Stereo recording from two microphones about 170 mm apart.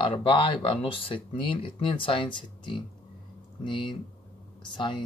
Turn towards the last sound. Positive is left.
turn(degrees=30)  # may be behind; listen again after turning